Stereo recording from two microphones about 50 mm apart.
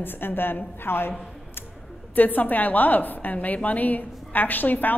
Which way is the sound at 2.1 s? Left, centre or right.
Left.